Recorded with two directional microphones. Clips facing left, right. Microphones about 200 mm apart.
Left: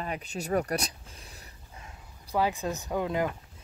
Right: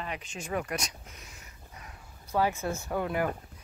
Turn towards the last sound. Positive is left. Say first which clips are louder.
# left 1 dB
turn(degrees=15)  # may be behind; listen again after turning